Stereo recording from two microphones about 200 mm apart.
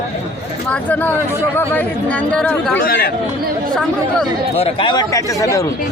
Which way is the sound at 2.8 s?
50° left (ahead or behind).